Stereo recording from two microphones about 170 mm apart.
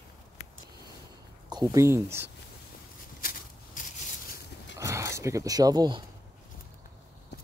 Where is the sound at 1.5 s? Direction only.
20° right (ahead or behind).